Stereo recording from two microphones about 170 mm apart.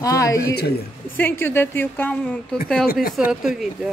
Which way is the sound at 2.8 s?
60° left (ahead or behind).